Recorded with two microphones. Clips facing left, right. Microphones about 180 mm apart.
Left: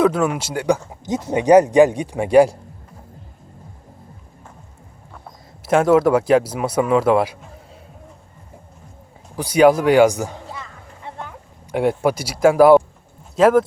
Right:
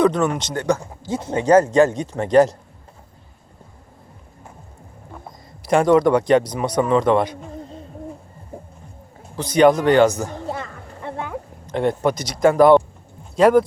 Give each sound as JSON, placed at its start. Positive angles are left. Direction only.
{"t": 0.0, "sound": "speech", "side_deg": 5}
{"t": 5.6, "sound": "speech", "side_deg": 5}
{"t": 9.3, "sound": "speech", "side_deg": 10}
{"t": 10.5, "sound": "music", "side_deg": -60}
{"t": 11.6, "sound": "speech", "side_deg": 10}